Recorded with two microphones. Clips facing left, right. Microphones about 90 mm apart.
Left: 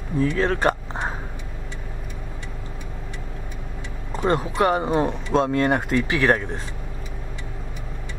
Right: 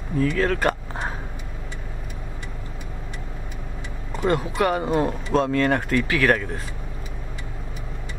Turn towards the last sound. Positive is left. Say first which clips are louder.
# even
turn(degrees=20)  # may be behind; listen again after turning